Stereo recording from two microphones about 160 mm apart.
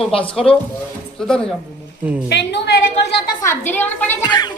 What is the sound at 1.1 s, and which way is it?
Speech, 5° left (ahead or behind).